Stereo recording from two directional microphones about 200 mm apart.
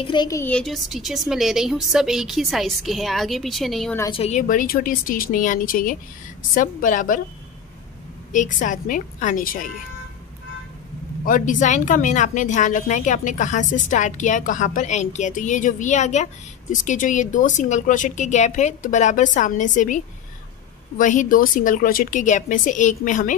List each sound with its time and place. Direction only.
0.0 s a woman's voice: 20° left (ahead or behind); by 4.0 s centre (ahead or behind)
4.1 s a woman's voice: 35° left (ahead or behind)
8.5 s speech: 40° left (ahead or behind)
11.2 s speech: 40° left (ahead or behind)
21.0 s speech: 40° left (ahead or behind)